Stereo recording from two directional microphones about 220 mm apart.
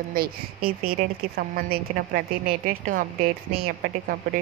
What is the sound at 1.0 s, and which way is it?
A woman's voice, 40° right (ahead or behind).